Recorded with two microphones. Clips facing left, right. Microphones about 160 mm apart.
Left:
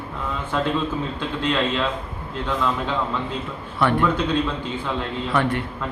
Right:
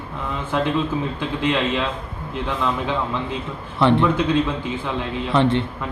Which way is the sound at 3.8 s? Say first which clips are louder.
Right 4 dB; 25° right (ahead or behind).